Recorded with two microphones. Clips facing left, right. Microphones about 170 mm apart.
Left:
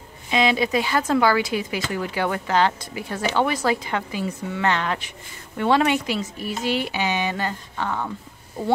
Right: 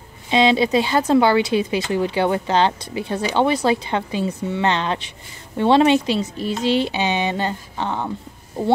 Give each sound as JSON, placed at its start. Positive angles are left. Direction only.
{"t": 0.3, "sound": "speech", "side_deg": -25}